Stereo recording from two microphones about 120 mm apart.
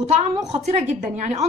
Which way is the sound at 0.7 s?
75° right (ahead or behind).